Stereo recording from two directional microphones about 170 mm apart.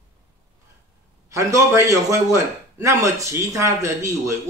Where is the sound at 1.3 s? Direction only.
20° right (ahead or behind).